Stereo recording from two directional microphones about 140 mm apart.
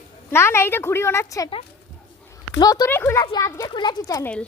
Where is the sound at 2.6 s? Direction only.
25° left (ahead or behind).